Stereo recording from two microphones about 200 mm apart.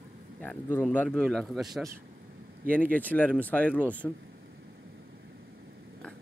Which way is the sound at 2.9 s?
10° left (ahead or behind).